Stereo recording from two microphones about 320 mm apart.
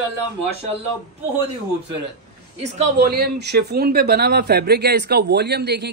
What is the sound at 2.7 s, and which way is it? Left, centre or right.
A man's voice, right.